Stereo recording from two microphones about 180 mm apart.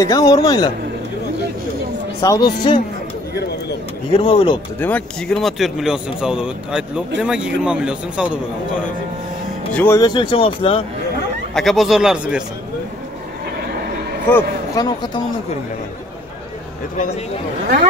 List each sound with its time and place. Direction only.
0.0 s speech: 20° left (ahead or behind)
2.2 s speech: 20° left (ahead or behind)
4.1 s speech: 30° left (ahead or behind)
4.7 s speech: 10° left (ahead or behind)
9.8 s speech: 15° left (ahead or behind)
11.5 s speech: centre (ahead or behind)
14.3 s speech: 20° left (ahead or behind)